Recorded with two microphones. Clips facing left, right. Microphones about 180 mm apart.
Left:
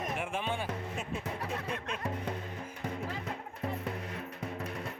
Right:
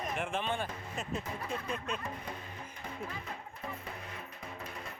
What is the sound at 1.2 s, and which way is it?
Speech, 70° left (ahead or behind).